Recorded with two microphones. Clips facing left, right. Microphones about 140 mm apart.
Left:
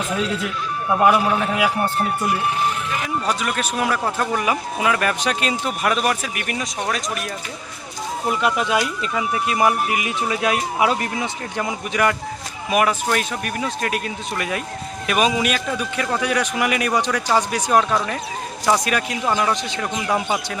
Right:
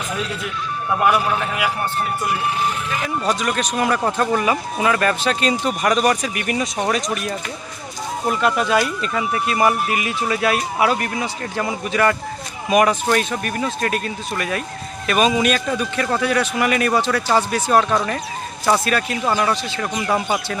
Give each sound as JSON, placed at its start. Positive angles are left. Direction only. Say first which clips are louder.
{"t": 1.0, "sound": "a man's voice", "louder": "left 2 dB", "side_deg": 20}
{"t": 3.2, "sound": "speech", "louder": "right 2 dB", "side_deg": 5}
{"t": 8.3, "sound": "speech", "louder": "right 2 dB", "side_deg": 10}
{"t": 12.7, "sound": "speech", "louder": "right 3 dB", "side_deg": 5}
{"t": 17.7, "sound": "speech", "louder": "right 1 dB", "side_deg": 0}
{"t": 18.9, "sound": "speech", "louder": "right 2 dB", "side_deg": 15}
{"t": 19.2, "sound": "speech", "louder": "even", "side_deg": -5}
{"t": 20.0, "sound": "speech", "louder": "right 1 dB", "side_deg": 5}